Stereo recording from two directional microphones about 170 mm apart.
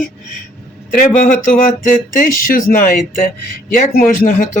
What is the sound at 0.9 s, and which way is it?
Speech, 50° left (ahead or behind).